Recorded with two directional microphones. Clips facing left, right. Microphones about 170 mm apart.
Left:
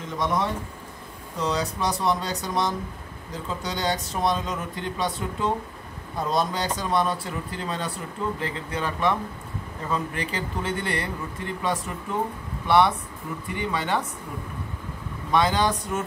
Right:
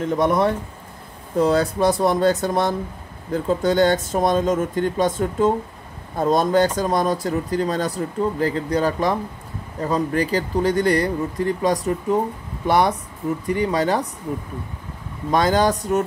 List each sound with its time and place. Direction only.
0.2 s speech: 60° right (ahead or behind); by 14.0 s 40° right (ahead or behind)
15.3 s speech: 45° right (ahead or behind)